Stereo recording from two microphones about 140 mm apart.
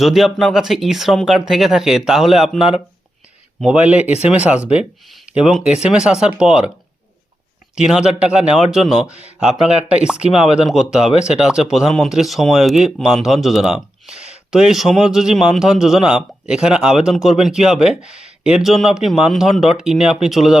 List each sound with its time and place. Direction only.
0.0 s speech: centre (ahead or behind)
7.8 s speech: 5° right (ahead or behind)